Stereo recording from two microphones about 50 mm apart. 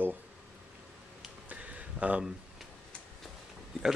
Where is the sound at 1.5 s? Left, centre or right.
Right.